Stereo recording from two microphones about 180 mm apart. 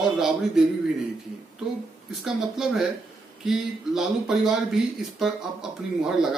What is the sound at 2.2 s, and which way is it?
Speech, 5° right (ahead or behind).